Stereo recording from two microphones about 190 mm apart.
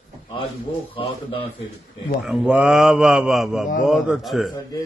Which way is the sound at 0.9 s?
30° left (ahead or behind).